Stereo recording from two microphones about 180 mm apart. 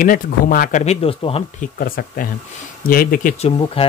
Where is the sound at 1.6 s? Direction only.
50° left (ahead or behind).